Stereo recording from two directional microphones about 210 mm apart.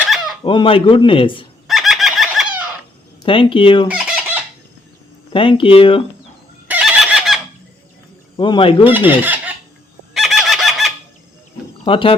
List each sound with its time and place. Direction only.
0.0 s chicken: centre (ahead or behind)
0.4 s speech: 25° left (ahead or behind)
1.6 s fowl: centre (ahead or behind)
3.2 s speech: 25° left (ahead or behind)
3.8 s chicken: 5° right (ahead or behind)
5.3 s speech: 25° left (ahead or behind)
6.7 s neigh: 5° right (ahead or behind)
8.4 s speech: 25° left (ahead or behind)
8.8 s speech: 10° right (ahead or behind)
10.2 s fowl: centre (ahead or behind)
11.9 s speech: 25° left (ahead or behind)